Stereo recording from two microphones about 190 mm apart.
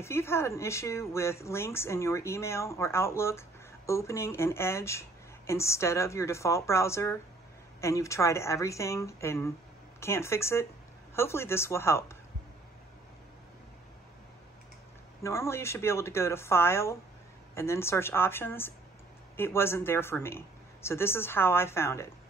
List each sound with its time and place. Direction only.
0.0 s speech: 15° left (ahead or behind)
15.2 s speech: 15° left (ahead or behind)